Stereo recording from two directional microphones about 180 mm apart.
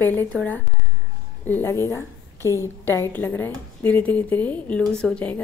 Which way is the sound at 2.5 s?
15° right (ahead or behind).